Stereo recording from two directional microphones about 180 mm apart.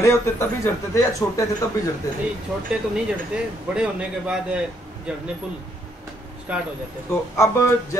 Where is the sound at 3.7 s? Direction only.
5° right (ahead or behind).